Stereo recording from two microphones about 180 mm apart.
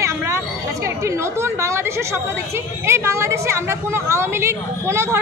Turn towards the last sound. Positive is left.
turn(degrees=-15)  # may be behind; listen again after turning